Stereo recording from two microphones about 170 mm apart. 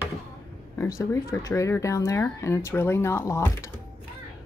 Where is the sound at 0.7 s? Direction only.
20° left (ahead or behind).